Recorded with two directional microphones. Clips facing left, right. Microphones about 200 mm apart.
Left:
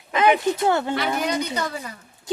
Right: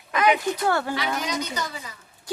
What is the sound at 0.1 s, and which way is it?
Speech, 25° left (ahead or behind).